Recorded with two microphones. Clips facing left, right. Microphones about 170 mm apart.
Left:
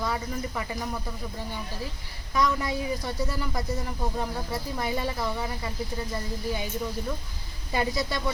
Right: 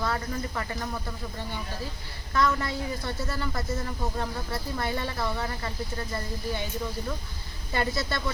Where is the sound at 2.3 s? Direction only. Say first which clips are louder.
Even; 15° left (ahead or behind).